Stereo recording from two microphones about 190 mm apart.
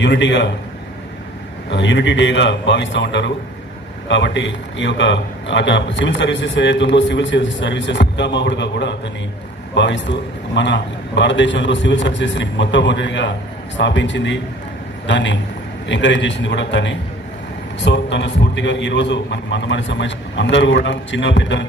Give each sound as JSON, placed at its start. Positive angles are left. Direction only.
{"t": 0.0, "sound": "a man's voice", "side_deg": 70}
{"t": 1.7, "sound": "a man's voice", "side_deg": 70}